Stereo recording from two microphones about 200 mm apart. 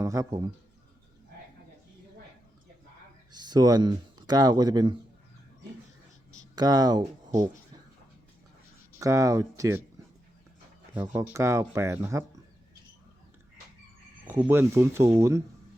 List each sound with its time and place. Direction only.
0.0 s speech: 15° right (ahead or behind)
3.3 s speech: 20° right (ahead or behind)
6.6 s speech: 20° right (ahead or behind)
9.0 s speech: 15° right (ahead or behind)
10.9 s speech: 10° right (ahead or behind)
14.3 s speech: 10° right (ahead or behind)